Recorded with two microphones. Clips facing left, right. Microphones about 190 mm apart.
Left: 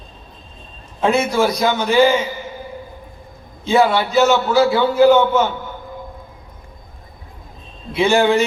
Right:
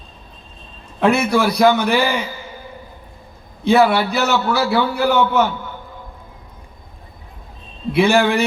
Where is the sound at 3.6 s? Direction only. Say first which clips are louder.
Right 1 dB; 65° right (ahead or behind).